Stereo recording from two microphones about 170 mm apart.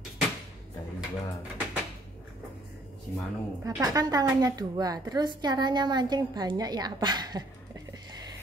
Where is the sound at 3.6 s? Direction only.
20° right (ahead or behind).